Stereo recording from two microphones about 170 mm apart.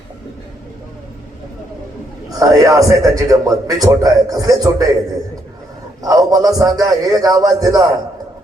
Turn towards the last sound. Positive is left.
turn(degrees=-20)  # may be behind; listen again after turning